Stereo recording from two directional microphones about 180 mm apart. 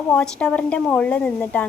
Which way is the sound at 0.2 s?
5° left (ahead or behind).